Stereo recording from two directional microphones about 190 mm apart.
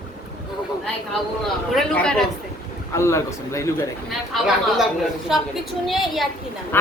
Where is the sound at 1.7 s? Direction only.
5° left (ahead or behind).